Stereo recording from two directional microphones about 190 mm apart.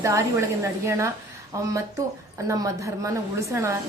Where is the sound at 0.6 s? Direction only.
15° right (ahead or behind).